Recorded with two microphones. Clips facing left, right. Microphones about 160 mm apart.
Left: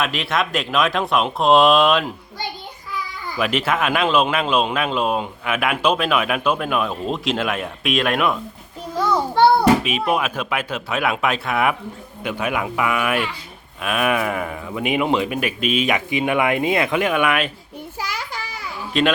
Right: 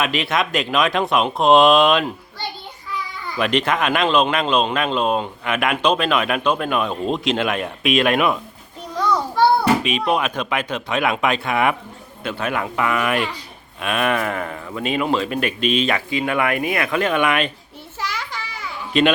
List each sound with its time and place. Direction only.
0.0 s speech: centre (ahead or behind)
3.3 s speech: 5° left (ahead or behind)
9.0 s a sound: 25° left (ahead or behind)
9.8 s speech: 5° left (ahead or behind)
12.2 s speech: 10° left (ahead or behind)
15.4 s speech: 5° left (ahead or behind); by 17.0 s 20° left (ahead or behind)
17.0 s speech: 5° left (ahead or behind)
18.9 s speech: centre (ahead or behind)